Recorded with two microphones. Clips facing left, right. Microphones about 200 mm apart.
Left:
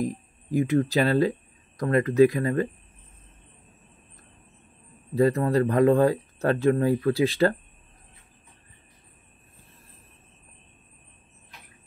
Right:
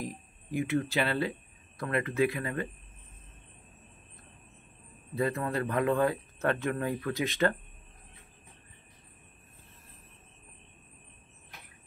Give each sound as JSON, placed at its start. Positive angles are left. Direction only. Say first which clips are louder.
{"t": 0.0, "sound": "speech", "louder": "left 10 dB", "side_deg": 40}
{"t": 5.1, "sound": "speech", "louder": "left 9 dB", "side_deg": 35}